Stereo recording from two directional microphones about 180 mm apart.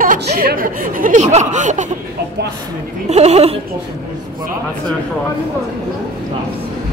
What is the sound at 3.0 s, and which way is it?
Speech, 35° right (ahead or behind).